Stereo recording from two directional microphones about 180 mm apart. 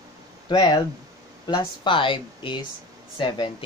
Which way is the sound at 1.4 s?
25° left (ahead or behind).